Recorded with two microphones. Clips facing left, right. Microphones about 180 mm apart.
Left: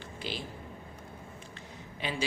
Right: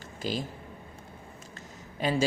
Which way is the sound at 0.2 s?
40° right (ahead or behind).